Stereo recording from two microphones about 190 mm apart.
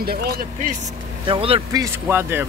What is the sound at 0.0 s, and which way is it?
Speech, 55° right (ahead or behind).